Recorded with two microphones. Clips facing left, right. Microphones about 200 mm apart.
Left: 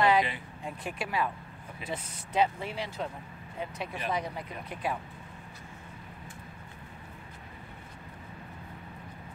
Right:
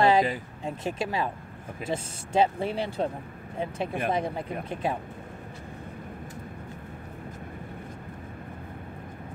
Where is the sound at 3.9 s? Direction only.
50° right (ahead or behind).